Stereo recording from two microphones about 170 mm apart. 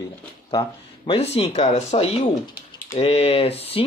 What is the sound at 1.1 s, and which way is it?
Speech, 35° left (ahead or behind).